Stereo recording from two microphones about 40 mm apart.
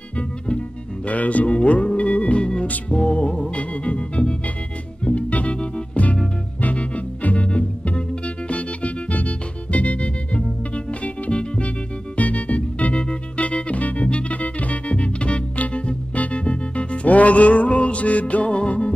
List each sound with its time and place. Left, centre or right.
0.1 s music: left
2.9 s organ: left
5.0 s music: left